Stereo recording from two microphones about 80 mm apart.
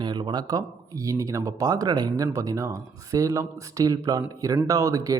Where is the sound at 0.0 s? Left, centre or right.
Right.